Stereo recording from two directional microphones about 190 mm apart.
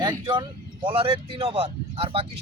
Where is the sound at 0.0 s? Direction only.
25° right (ahead or behind).